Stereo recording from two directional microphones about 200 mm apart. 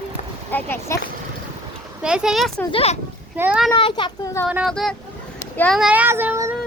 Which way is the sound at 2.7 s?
30° left (ahead or behind).